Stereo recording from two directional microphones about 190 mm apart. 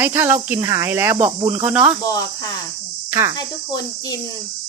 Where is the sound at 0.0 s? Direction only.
10° right (ahead or behind).